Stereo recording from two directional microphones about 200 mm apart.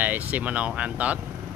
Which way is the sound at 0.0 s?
10° right (ahead or behind).